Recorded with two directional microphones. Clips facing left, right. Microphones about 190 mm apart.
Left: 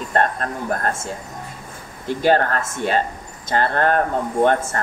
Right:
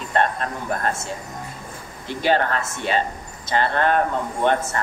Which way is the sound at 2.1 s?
45° left (ahead or behind).